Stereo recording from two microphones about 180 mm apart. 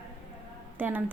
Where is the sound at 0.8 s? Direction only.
10° right (ahead or behind).